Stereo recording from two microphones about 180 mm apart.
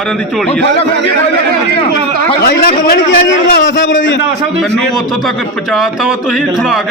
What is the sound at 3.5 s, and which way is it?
Speech, 90° left.